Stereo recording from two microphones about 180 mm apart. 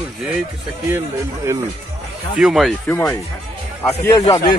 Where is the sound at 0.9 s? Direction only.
15° right (ahead or behind).